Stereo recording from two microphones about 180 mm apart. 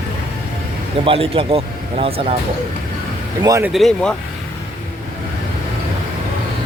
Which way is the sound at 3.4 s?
20° right (ahead or behind).